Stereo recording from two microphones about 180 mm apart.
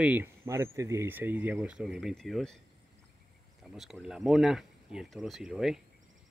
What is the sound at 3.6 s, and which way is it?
Speech, centre (ahead or behind).